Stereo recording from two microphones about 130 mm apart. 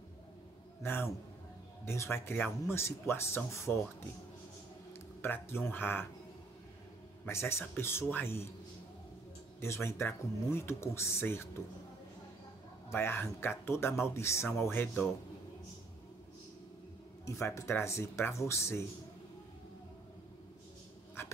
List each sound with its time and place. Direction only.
0.8 s speech: 15° left (ahead or behind)
5.2 s speech: 15° left (ahead or behind)
7.2 s speech: 20° left (ahead or behind)
9.6 s speech: 20° left (ahead or behind)
12.9 s speech: 15° left (ahead or behind)
17.4 s speech: 20° left (ahead or behind)